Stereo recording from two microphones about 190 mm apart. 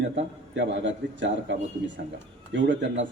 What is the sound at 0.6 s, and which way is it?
Speech, 70° right (ahead or behind).